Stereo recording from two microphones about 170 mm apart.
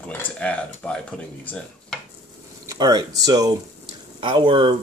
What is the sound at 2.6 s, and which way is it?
Speech, 25° right (ahead or behind).